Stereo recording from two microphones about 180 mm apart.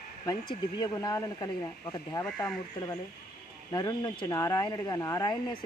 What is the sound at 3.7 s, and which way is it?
Speech, 20° left (ahead or behind).